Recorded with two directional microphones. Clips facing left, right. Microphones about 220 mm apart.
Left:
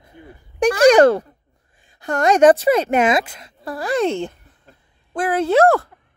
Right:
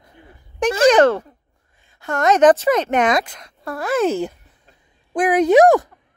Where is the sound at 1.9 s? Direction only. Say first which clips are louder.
Even; 30° left (ahead or behind).